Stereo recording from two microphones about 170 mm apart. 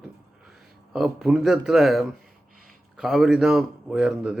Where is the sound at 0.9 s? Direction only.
5° right (ahead or behind).